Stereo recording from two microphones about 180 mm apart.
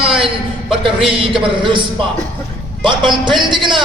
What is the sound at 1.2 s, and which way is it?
Speech, 30° right (ahead or behind).